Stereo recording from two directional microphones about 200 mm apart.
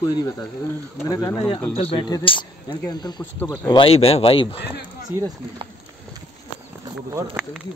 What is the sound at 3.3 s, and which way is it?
Speech, 10° left (ahead or behind).